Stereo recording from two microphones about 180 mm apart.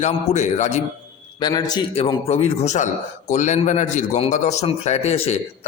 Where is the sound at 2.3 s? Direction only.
35° left (ahead or behind).